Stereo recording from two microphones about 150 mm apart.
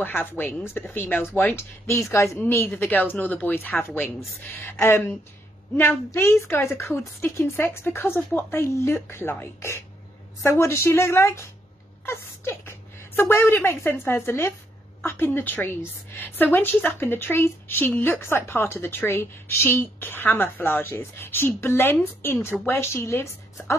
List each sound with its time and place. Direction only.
0.0 s a woman's voice: 15° left (ahead or behind)